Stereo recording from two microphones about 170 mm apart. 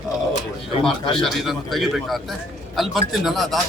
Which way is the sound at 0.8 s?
30° left (ahead or behind).